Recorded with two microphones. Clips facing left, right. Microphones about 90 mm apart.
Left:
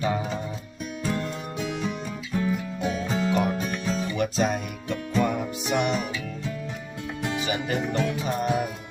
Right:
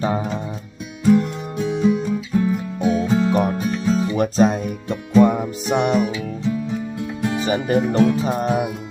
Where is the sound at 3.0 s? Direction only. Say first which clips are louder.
Right 8 dB; 15° right (ahead or behind).